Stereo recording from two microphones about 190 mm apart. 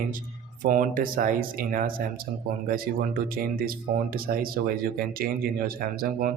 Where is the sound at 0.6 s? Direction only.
45° right (ahead or behind).